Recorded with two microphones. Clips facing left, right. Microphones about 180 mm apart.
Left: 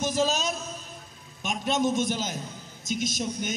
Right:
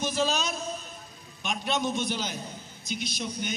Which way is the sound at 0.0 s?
45° left (ahead or behind).